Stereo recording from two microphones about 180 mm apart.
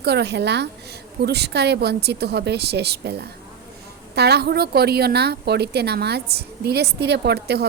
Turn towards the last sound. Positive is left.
turn(degrees=-65)  # may be behind; listen again after turning